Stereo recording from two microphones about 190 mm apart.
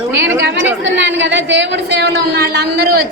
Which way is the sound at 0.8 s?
70° right (ahead or behind).